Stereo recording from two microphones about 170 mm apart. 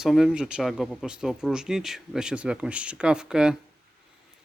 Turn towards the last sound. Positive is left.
turn(degrees=-5)  # may be behind; listen again after turning